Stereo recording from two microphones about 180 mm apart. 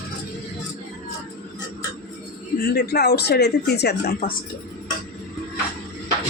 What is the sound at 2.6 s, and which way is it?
Speech, 60° left (ahead or behind).